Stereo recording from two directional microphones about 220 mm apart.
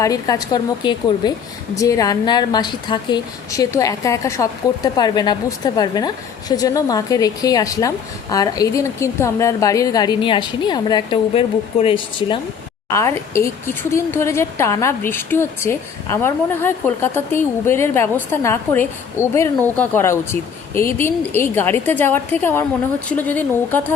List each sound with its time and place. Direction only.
0.0 s speech: 15° left (ahead or behind)
12.9 s speech: 15° left (ahead or behind)